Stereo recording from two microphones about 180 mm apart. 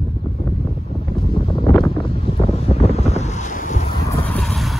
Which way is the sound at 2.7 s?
35° left (ahead or behind).